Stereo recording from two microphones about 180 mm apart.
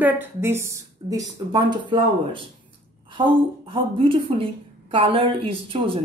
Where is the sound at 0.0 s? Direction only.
10° right (ahead or behind).